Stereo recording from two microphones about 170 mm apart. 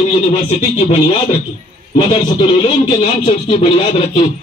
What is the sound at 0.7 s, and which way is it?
Speech, 40° left (ahead or behind).